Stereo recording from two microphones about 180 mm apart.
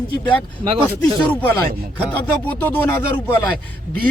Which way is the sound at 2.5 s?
10° left (ahead or behind).